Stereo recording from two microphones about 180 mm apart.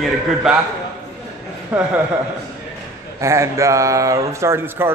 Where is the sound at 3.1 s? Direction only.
15° right (ahead or behind).